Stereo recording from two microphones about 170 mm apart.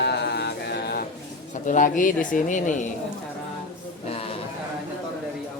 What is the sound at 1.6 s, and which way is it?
Speech, 50° left (ahead or behind).